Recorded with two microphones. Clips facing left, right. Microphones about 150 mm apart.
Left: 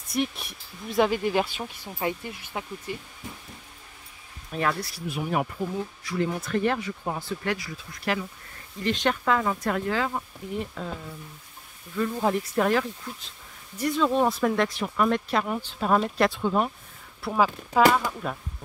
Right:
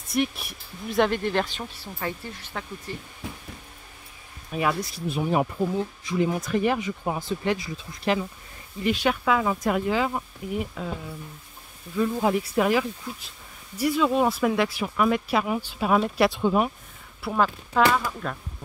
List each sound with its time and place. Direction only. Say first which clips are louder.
0.1 s speech: right 2 dB; centre (ahead or behind); by 3.0 s 15° left (ahead or behind)
4.5 s speech: right 2 dB; 10° right (ahead or behind)
4.9 s speech: right 3 dB; 25° right (ahead or behind)
8.8 s speech: right 1 dB; 5° right (ahead or behind)
12.0 s speech: right 2 dB; 5° right (ahead or behind)
17.2 s speech: even; 5° left (ahead or behind)